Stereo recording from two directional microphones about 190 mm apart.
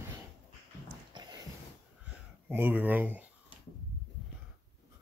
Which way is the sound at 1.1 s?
25° right (ahead or behind).